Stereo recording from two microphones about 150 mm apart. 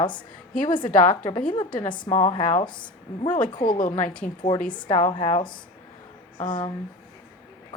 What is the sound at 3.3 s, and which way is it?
Speech, 65° left (ahead or behind).